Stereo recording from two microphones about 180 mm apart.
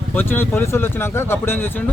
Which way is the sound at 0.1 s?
10° left (ahead or behind).